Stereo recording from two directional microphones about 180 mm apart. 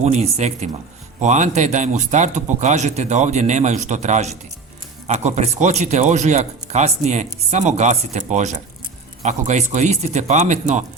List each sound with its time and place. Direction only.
0.0 s speech: 40° right (ahead or behind)